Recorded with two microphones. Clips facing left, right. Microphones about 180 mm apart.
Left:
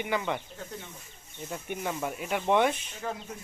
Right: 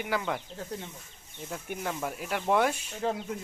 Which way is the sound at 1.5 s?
Centre (ahead or behind).